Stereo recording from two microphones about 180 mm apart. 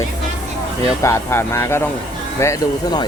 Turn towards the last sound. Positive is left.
turn(degrees=20)  # may be behind; listen again after turning